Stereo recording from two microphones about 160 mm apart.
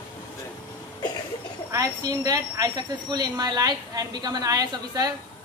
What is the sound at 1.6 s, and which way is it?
Speech, 20° right (ahead or behind).